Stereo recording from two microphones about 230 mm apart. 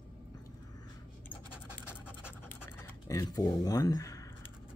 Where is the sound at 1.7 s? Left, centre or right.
Centre.